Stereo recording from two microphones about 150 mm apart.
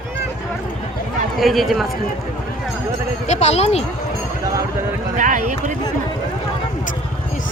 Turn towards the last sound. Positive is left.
turn(degrees=-55)  # may be behind; listen again after turning